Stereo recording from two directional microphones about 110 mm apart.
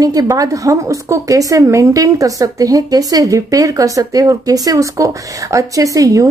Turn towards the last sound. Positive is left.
turn(degrees=-30)  # may be behind; listen again after turning